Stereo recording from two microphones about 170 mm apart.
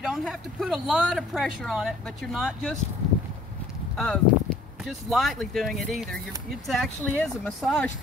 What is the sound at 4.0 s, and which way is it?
Speech, 5° left (ahead or behind).